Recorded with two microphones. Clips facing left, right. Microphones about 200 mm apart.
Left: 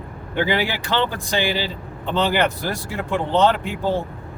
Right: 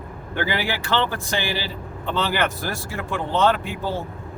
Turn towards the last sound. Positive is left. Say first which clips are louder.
# left 2 dB
turn(degrees=20)  # may be behind; listen again after turning